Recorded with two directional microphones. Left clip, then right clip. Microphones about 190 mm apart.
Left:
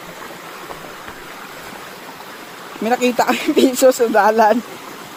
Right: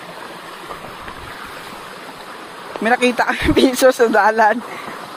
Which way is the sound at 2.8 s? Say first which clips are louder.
Right 1 dB; 10° left (ahead or behind).